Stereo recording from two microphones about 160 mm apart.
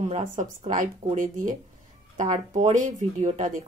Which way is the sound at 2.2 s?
45° right (ahead or behind).